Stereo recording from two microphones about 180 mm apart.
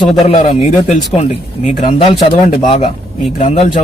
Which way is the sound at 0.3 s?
40° left (ahead or behind).